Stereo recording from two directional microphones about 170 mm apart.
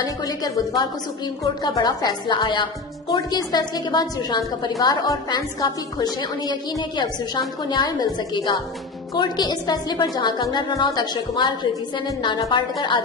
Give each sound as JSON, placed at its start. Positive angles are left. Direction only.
{"t": 0.0, "sound": "a woman's voice", "side_deg": 20}